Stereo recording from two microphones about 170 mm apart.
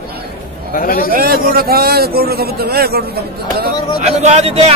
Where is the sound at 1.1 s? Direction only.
55° right (ahead or behind).